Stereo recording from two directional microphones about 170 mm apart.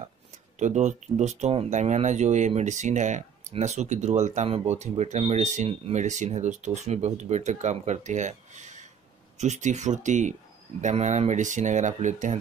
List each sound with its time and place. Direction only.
0.6 s speech: 45° right (ahead or behind)